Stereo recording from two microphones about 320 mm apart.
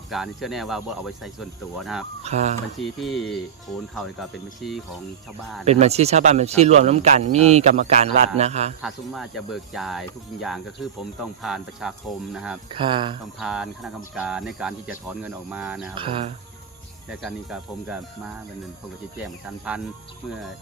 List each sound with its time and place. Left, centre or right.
0.1 s speech: centre
2.2 s speech: right
2.8 s speech: centre
5.6 s speech: centre
8.8 s speech: centre
12.7 s speech: centre
13.4 s speech: centre
16.0 s speech: centre
17.1 s speech: centre
19.2 s speech: centre